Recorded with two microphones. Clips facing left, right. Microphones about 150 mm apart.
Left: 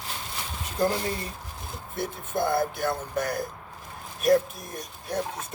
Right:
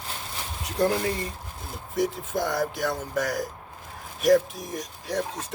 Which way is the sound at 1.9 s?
90° right.